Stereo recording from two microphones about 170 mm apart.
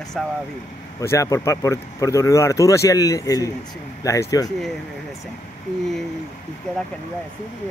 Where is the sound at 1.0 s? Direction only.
20° left (ahead or behind).